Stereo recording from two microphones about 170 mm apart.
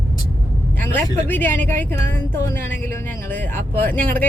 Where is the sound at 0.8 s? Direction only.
10° left (ahead or behind).